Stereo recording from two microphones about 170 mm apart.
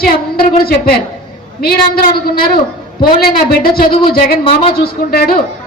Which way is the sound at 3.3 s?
60° left (ahead or behind).